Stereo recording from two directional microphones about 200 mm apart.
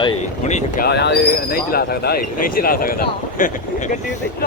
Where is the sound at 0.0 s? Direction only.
30° left (ahead or behind).